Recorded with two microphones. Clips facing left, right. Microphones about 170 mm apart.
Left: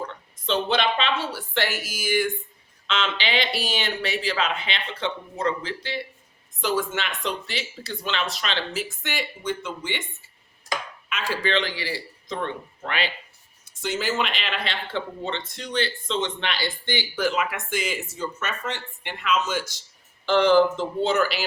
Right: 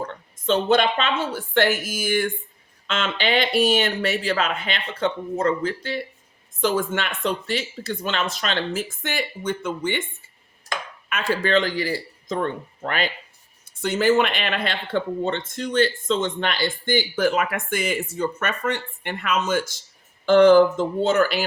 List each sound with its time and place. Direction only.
0.0 s a woman's voice: 45° right (ahead or behind)
13.8 s speech: 55° right (ahead or behind)